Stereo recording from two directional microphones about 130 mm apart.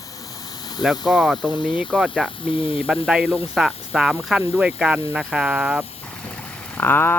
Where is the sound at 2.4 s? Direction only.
45° left (ahead or behind).